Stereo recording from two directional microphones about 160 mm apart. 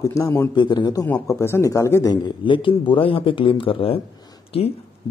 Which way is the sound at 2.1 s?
30° left (ahead or behind).